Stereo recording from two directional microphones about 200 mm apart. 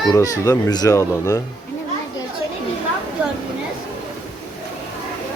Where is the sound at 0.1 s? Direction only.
15° left (ahead or behind).